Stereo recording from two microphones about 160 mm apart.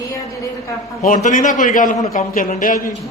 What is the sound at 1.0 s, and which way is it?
A man's voice, 55° left (ahead or behind).